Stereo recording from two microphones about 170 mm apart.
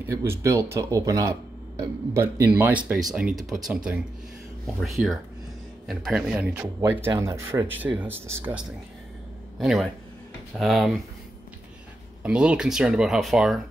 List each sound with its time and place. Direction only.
0.0 s speech: 15° right (ahead or behind)
9.6 s a man's voice: centre (ahead or behind)
12.2 s speech: 5° right (ahead or behind)